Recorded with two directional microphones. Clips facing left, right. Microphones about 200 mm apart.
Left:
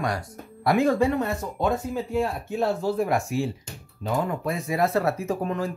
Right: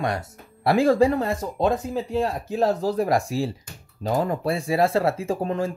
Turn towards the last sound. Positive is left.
turn(degrees=-30)  # may be behind; listen again after turning